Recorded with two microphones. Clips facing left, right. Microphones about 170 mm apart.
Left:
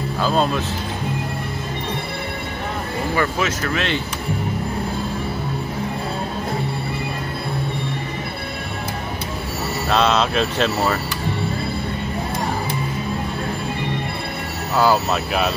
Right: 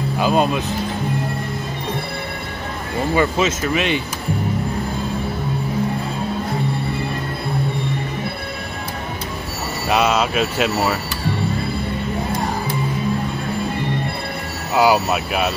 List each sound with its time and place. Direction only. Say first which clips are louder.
0.2 s speech: right 2 dB; 15° right (ahead or behind)
3.2 s speech: right 4 dB; 20° right (ahead or behind)
9.8 s speech: right 1 dB; 10° right (ahead or behind)
14.8 s speech: right 2 dB; 15° right (ahead or behind)